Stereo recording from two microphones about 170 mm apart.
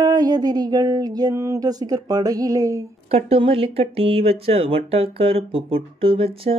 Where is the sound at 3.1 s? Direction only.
35° right (ahead or behind).